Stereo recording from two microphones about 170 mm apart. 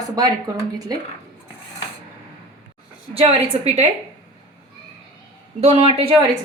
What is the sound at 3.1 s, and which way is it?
Speech, 35° right (ahead or behind).